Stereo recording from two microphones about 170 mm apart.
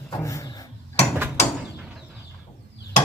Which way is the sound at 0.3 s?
20° left (ahead or behind).